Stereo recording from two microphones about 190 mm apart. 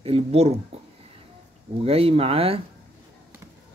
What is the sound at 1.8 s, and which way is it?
Speech, 30° right (ahead or behind).